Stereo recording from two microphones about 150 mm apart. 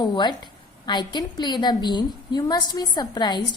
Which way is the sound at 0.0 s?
30° left (ahead or behind).